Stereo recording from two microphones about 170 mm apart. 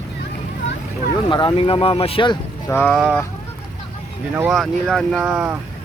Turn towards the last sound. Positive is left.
turn(degrees=-10)  # may be behind; listen again after turning